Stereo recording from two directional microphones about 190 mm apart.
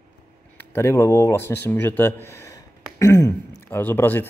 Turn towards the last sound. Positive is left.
turn(degrees=10)  # may be behind; listen again after turning